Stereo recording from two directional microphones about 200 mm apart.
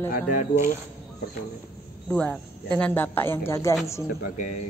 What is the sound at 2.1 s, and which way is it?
Speech, 5° left (ahead or behind).